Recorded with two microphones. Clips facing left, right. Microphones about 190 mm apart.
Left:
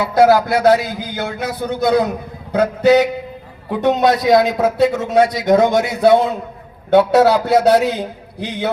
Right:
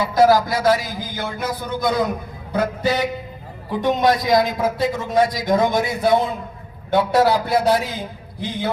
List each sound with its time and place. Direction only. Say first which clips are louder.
0.0 s a man's voice: left 3 dB; 65° left (ahead or behind)